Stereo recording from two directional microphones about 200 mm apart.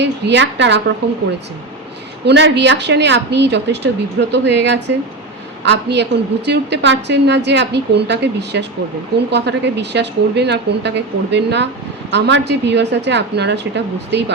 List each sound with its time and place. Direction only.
0.0 s a woman's voice: 60° right (ahead or behind)
2.2 s a woman's voice: 60° right (ahead or behind)